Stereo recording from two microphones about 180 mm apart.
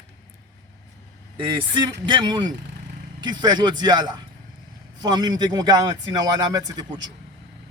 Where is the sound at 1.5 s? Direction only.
25° right (ahead or behind).